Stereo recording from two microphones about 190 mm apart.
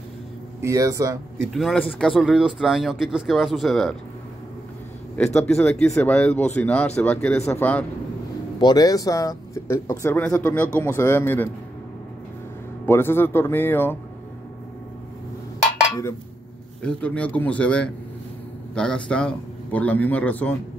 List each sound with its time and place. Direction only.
0.6 s speech: 15° right (ahead or behind)
1.5 s speech: centre (ahead or behind)
5.1 s speech: 5° left (ahead or behind)
12.8 s speech: 10° left (ahead or behind)
16.8 s speech: 5° left (ahead or behind)